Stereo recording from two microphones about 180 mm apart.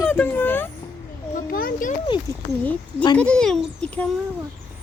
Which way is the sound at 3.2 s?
5° left (ahead or behind).